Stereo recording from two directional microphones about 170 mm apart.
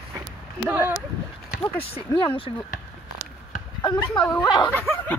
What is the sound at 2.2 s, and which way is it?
Speech, 30° left (ahead or behind).